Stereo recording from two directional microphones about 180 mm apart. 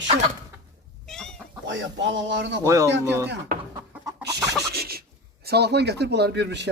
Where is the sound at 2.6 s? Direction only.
15° right (ahead or behind).